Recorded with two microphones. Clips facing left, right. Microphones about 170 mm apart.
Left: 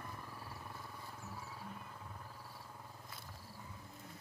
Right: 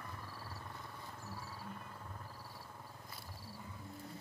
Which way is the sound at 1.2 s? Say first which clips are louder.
Right 1 dB; centre (ahead or behind).